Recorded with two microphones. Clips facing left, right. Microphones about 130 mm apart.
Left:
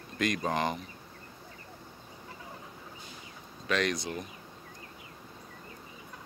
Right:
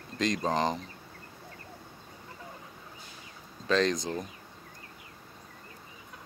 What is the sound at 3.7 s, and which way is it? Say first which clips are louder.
Speech: right 4 dB; 30° right (ahead or behind).